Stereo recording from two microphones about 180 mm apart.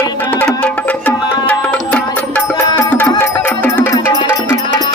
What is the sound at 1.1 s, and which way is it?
Music, 10° left (ahead or behind).